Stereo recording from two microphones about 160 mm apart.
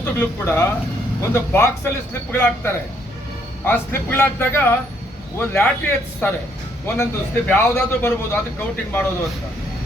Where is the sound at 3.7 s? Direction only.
15° left (ahead or behind).